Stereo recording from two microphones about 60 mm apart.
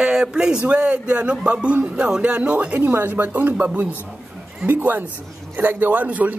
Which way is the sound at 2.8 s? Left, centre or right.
Right.